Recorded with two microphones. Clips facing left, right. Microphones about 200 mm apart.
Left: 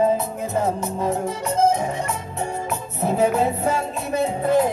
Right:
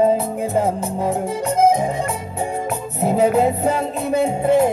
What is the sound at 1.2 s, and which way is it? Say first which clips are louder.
Music: right 5 dB; 15° right (ahead or behind).